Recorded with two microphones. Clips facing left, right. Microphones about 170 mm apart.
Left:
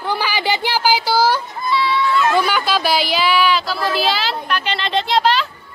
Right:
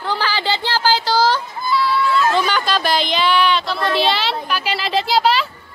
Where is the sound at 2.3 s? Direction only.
10° left (ahead or behind).